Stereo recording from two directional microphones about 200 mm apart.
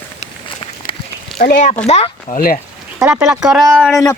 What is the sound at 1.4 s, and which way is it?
Speech, 40° left (ahead or behind).